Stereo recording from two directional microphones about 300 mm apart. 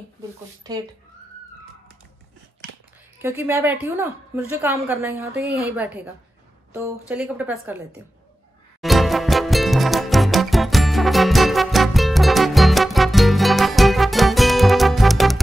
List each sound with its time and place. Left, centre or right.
0.7 s a woman's voice: centre
3.2 s a woman's voice: centre
8.8 s music: centre